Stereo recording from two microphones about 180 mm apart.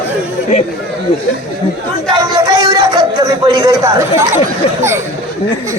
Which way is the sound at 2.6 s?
25° right (ahead or behind).